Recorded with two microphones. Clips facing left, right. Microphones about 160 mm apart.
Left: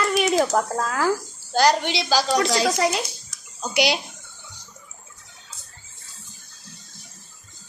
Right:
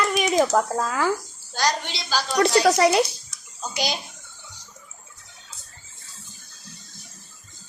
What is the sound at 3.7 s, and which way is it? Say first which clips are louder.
Speech: left 6 dB; 75° left (ahead or behind).